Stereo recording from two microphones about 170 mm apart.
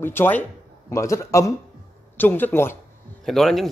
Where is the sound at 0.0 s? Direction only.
15° left (ahead or behind).